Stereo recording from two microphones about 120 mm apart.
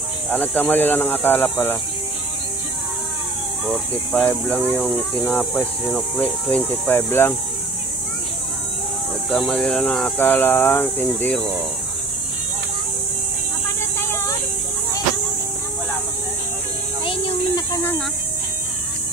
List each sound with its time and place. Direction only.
0.3 s speech: 15° left (ahead or behind)
3.6 s speech: 5° right (ahead or behind)
4.2 s speech: 10° left (ahead or behind)
6.9 s speech: 20° left (ahead or behind)
9.3 s speech: 5° left (ahead or behind)
13.9 s a sound: 20° left (ahead or behind)
17.0 s a sound: 45° left (ahead or behind)